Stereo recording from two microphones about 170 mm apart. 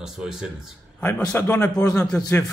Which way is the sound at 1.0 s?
10° left (ahead or behind).